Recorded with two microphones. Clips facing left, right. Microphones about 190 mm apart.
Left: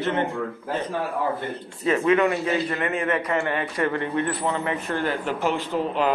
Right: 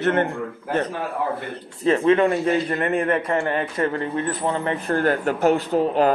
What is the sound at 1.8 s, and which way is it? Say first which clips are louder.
Speech: right 3 dB; 30° right (ahead or behind).